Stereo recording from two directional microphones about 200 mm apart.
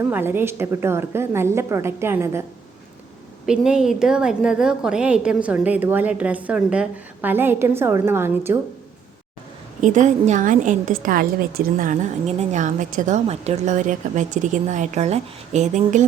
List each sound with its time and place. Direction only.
0.0 s a woman's voice: 10° right (ahead or behind)
3.4 s a woman's voice: 5° right (ahead or behind)
9.8 s a woman's voice: 40° right (ahead or behind)